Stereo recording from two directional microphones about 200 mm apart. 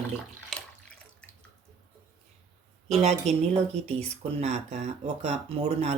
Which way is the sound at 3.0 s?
30° right (ahead or behind).